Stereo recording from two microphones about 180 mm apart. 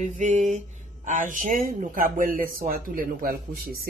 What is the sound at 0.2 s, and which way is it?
A man's voice, 40° right (ahead or behind).